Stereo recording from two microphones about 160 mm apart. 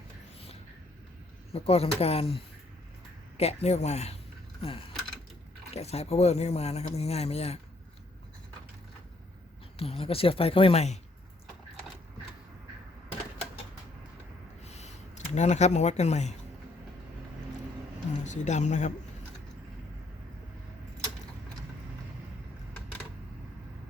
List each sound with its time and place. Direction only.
1.5 s speech: 40° left (ahead or behind)
5.7 s speech: 40° left (ahead or behind)
9.7 s speech: 35° left (ahead or behind)
14.6 s a sound: 45° left (ahead or behind)
18.2 s speech: 45° left (ahead or behind)